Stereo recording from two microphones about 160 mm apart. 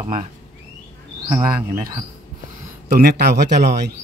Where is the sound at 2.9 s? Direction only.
85° right.